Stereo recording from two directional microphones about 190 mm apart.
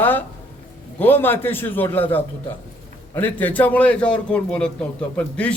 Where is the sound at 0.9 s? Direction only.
10° left (ahead or behind).